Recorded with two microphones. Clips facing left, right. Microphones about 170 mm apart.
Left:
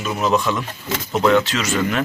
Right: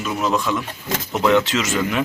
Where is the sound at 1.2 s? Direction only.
20° right (ahead or behind).